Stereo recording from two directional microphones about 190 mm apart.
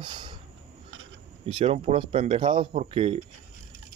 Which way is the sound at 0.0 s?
25° right (ahead or behind).